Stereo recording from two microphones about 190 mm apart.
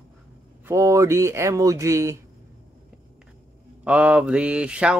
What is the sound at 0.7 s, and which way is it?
Speech, 15° right (ahead or behind).